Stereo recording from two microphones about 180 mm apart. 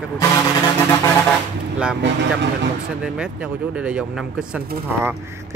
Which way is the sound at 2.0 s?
80° right.